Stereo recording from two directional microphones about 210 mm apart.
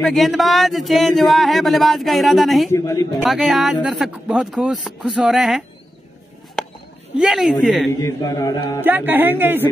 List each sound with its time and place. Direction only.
0.0 s speech: centre (ahead or behind)
2.7 s mantra: 15° left (ahead or behind)
3.3 s speech: centre (ahead or behind)
6.6 s a sound: centre (ahead or behind)
7.2 s speech: centre (ahead or behind)
8.0 s mantra: 15° left (ahead or behind)
8.8 s speech: 10° right (ahead or behind)